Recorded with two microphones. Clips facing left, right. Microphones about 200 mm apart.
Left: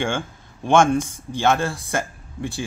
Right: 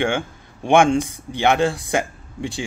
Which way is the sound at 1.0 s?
65° right (ahead or behind).